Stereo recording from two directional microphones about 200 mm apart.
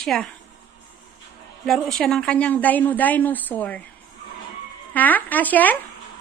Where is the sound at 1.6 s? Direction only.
Centre (ahead or behind).